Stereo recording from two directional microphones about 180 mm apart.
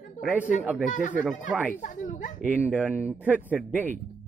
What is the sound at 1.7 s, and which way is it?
Speech, 45° left (ahead or behind).